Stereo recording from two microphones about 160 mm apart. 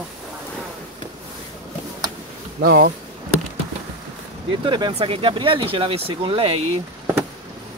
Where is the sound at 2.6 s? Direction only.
65° right (ahead or behind).